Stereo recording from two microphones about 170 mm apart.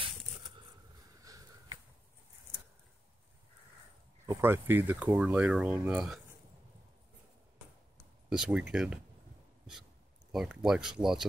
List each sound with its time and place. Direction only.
1.2 s sniff: 20° right (ahead or behind)
4.3 s speech: 15° right (ahead or behind)
8.3 s speech: 5° right (ahead or behind)
10.3 s speech: centre (ahead or behind)